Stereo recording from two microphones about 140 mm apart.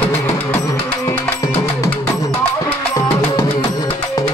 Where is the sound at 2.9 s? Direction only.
25° left (ahead or behind).